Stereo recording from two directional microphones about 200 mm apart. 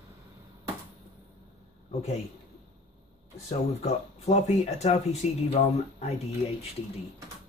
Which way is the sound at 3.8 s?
35° left (ahead or behind).